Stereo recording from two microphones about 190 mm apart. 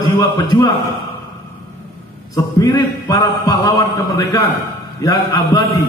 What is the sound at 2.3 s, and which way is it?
A man's voice, 20° left (ahead or behind).